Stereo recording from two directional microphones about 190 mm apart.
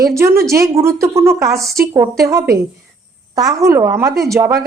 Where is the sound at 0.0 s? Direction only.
15° right (ahead or behind).